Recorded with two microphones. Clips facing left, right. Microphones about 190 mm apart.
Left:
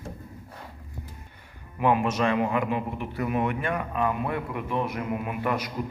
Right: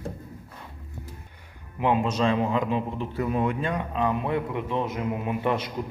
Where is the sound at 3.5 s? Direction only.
20° right (ahead or behind).